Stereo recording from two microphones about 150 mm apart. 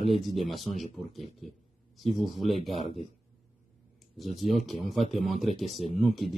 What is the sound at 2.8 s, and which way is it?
Speech, 35° right (ahead or behind).